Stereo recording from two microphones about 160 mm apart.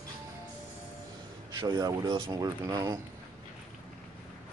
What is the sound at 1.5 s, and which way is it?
Speech, 25° right (ahead or behind).